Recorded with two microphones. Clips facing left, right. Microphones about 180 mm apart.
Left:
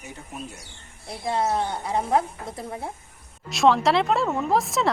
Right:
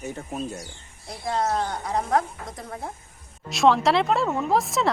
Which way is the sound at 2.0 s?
5° left (ahead or behind).